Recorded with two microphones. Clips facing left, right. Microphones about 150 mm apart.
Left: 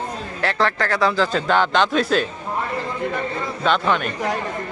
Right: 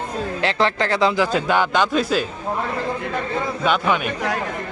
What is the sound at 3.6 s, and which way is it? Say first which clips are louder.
Speech: left 1 dB; 10° right (ahead or behind).